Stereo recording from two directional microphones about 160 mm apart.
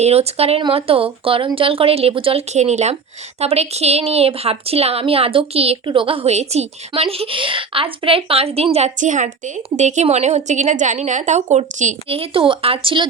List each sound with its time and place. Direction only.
0.0 s a woman's voice: 40° right (ahead or behind)